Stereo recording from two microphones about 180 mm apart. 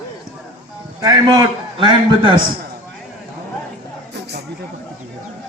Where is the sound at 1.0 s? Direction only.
20° right (ahead or behind).